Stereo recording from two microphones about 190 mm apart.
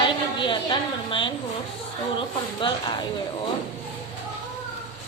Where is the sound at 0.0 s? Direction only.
25° left (ahead or behind).